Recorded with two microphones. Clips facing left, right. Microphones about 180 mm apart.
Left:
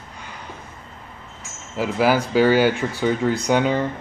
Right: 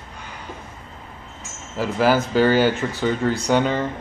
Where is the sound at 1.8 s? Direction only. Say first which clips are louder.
Even; 10° left (ahead or behind).